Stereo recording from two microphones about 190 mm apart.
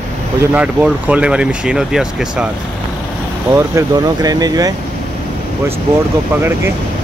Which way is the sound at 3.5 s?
15° right (ahead or behind).